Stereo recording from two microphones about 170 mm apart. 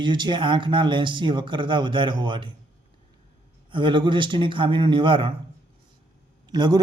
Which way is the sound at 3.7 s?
30° right (ahead or behind).